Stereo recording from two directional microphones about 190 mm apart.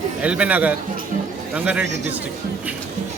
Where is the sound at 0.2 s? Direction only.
5° right (ahead or behind).